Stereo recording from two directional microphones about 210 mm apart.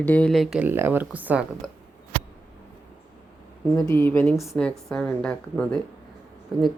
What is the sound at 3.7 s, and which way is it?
Speech, 10° left (ahead or behind).